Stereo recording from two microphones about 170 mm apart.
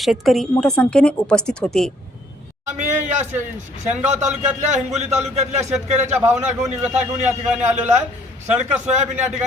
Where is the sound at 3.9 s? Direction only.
45° right (ahead or behind).